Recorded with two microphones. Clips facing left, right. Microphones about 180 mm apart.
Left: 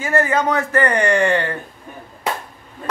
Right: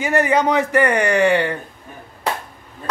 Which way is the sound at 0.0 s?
15° right (ahead or behind).